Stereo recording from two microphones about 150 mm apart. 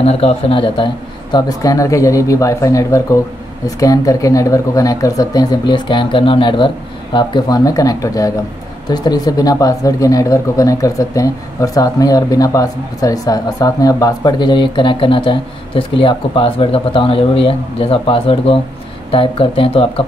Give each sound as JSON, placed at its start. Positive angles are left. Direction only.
{"t": 0.0, "sound": "speech", "side_deg": 40}
{"t": 1.3, "sound": "speech", "side_deg": 20}